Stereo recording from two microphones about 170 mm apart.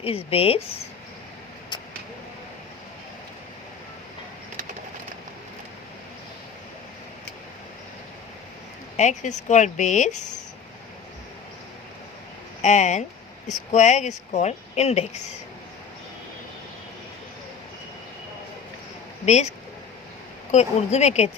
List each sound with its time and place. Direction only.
0.0 s speech: 35° left (ahead or behind)
9.0 s speech: 45° left (ahead or behind)
12.6 s speech: 45° left (ahead or behind)
19.2 s speech: 40° left (ahead or behind)
20.5 s speech: 40° left (ahead or behind)